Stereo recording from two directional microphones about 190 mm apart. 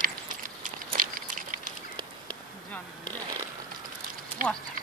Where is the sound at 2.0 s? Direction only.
5° left (ahead or behind).